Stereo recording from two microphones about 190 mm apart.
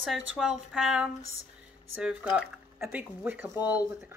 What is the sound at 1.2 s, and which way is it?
Speech, 90° right.